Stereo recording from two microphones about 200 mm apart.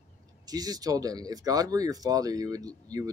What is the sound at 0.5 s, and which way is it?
Speech, 20° right (ahead or behind).